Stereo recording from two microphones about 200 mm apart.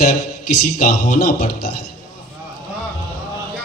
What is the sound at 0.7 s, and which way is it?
Speech, 50° left (ahead or behind).